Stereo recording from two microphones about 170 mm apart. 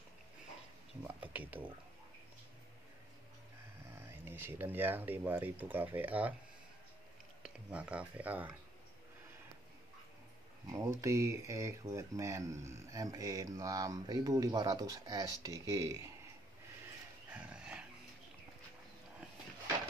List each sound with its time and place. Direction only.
1.0 s speech: 10° right (ahead or behind)
3.9 s speech: 15° right (ahead or behind)
7.4 s speech: 5° right (ahead or behind)
10.7 s speech: 20° right (ahead or behind)
17.3 s dog: 5° right (ahead or behind)